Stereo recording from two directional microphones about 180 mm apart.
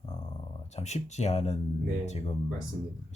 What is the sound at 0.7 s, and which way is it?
Speech, 40° left (ahead or behind).